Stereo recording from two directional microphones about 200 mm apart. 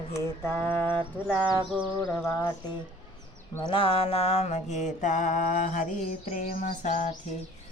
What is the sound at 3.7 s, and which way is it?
Mantra, 25° left (ahead or behind).